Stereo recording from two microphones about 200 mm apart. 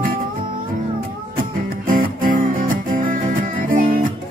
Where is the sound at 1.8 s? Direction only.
45° right (ahead or behind).